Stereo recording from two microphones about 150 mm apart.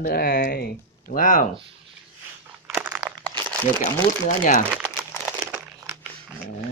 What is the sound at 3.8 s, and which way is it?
Speech, 55° left (ahead or behind).